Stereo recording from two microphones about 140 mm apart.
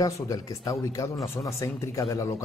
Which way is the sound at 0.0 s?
25° left (ahead or behind).